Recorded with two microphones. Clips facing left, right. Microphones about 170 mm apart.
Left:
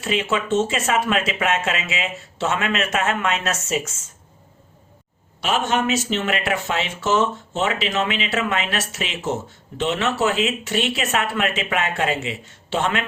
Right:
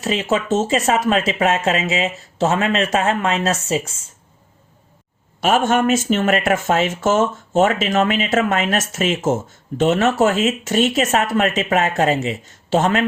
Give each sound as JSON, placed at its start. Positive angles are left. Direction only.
{"t": 0.0, "sound": "speech", "side_deg": -40}
{"t": 5.4, "sound": "speech", "side_deg": -50}